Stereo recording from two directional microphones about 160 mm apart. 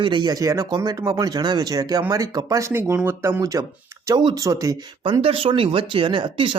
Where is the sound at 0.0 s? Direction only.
30° right (ahead or behind).